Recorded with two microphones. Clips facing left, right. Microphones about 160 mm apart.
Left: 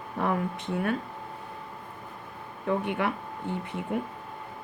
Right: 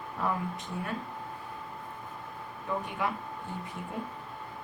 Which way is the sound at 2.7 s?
65° left (ahead or behind).